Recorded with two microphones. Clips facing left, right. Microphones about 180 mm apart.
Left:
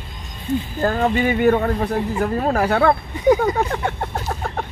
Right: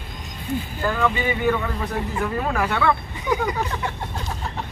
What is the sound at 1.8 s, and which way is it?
Speech, 40° left (ahead or behind).